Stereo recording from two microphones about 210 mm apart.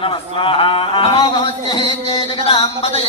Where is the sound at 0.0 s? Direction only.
25° left (ahead or behind).